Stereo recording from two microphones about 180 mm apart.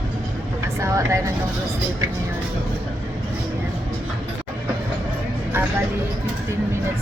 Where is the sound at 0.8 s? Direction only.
15° right (ahead or behind).